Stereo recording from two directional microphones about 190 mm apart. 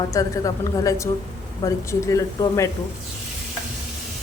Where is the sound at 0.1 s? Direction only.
20° left (ahead or behind).